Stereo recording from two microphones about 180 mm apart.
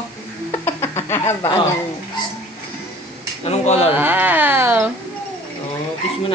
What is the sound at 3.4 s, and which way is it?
Speech, 35° left (ahead or behind).